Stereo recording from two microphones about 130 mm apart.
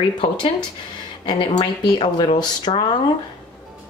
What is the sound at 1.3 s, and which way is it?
Speech, 35° left (ahead or behind).